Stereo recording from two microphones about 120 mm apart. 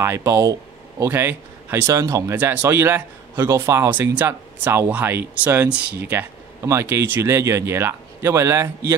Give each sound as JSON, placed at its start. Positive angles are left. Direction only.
{"t": 0.0, "sound": "speech", "side_deg": -20}
{"t": 2.3, "sound": "speech", "side_deg": -15}